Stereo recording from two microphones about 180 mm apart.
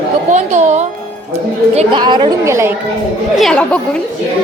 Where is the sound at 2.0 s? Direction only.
25° right (ahead or behind).